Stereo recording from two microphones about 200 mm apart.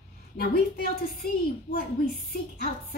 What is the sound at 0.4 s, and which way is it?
A woman's voice, 50° left (ahead or behind).